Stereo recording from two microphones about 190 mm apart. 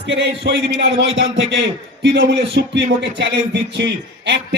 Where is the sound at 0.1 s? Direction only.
65° right (ahead or behind).